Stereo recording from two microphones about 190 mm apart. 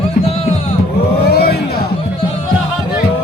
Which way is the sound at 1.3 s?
55° left (ahead or behind).